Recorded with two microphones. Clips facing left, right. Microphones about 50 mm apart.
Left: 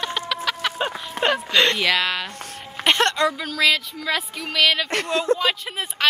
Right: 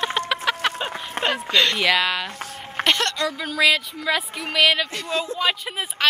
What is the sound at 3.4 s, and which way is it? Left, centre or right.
Speech, centre.